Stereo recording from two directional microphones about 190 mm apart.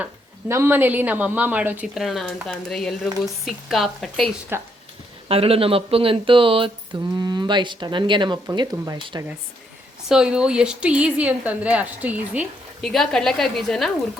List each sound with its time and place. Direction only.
0.0 s a woman's voice: 15° right (ahead or behind)
4.5 s speech: 10° right (ahead or behind)
5.3 s speech: 30° right (ahead or behind)
10.1 s a woman's voice: 5° right (ahead or behind)